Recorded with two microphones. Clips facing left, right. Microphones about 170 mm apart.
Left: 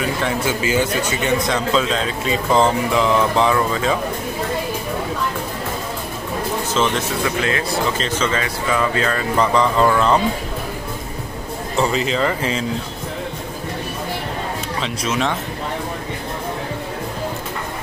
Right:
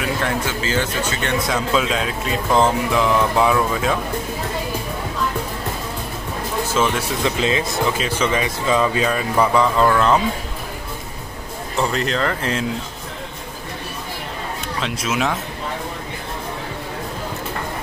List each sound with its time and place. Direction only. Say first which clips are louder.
0.5 s speech: left 4 dB; 10° left (ahead or behind)
1.5 s speech: left 1 dB; 5° right (ahead or behind)
6.7 s speech: even; 10° right (ahead or behind)
7.2 s speech: right 4 dB; 20° right (ahead or behind); by 10.2 s centre (ahead or behind)
11.7 s speech: left 2 dB; centre (ahead or behind)
14.8 s speech: even; 5° right (ahead or behind)